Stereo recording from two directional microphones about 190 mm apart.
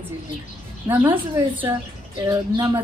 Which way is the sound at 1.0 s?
25° right (ahead or behind).